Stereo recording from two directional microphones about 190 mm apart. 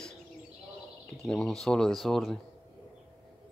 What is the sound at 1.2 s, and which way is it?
Speech, centre (ahead or behind).